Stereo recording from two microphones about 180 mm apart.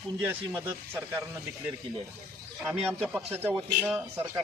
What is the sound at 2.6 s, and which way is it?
Speech, 5° right (ahead or behind).